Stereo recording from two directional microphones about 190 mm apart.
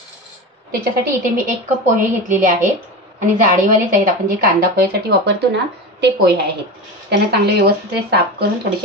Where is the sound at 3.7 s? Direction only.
45° right (ahead or behind).